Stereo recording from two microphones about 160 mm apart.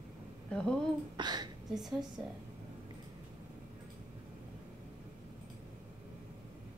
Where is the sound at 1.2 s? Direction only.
25° right (ahead or behind).